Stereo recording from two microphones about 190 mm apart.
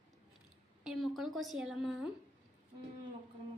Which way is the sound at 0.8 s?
Centre (ahead or behind).